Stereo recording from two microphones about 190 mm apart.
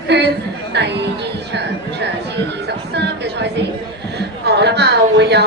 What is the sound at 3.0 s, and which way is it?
A woman's voice, 65° right (ahead or behind).